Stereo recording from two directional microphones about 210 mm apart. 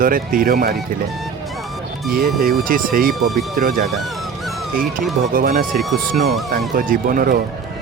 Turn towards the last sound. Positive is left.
turn(degrees=-40)  # may be behind; listen again after turning